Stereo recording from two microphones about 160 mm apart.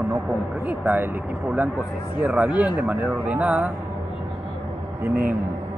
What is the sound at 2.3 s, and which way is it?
Speech, 10° right (ahead or behind).